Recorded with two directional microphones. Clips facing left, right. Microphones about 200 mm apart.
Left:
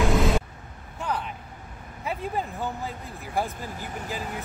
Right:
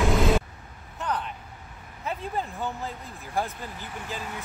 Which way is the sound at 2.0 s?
15° left (ahead or behind).